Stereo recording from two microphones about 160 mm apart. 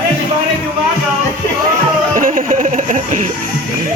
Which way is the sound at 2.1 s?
55° right (ahead or behind).